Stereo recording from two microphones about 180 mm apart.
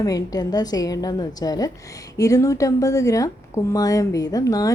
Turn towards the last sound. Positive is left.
turn(degrees=20)  # may be behind; listen again after turning